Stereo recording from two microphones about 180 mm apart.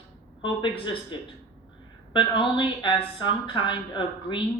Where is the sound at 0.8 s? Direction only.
25° left (ahead or behind).